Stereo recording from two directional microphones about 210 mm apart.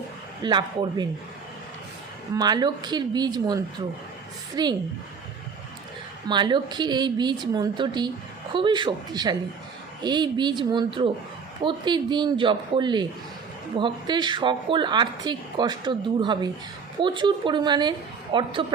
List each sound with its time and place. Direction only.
0.4 s a woman's voice: 20° right (ahead or behind)
2.3 s a woman's voice: 20° right (ahead or behind)
6.2 s a woman's voice: 20° right (ahead or behind)